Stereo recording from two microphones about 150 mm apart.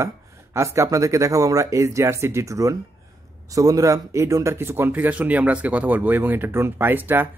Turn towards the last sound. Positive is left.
turn(degrees=-15)  # may be behind; listen again after turning